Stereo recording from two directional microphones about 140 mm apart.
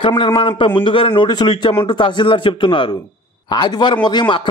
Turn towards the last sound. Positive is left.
turn(degrees=30)  # may be behind; listen again after turning